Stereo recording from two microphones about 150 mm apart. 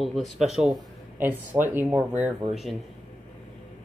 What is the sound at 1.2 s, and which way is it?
Speech, 15° right (ahead or behind).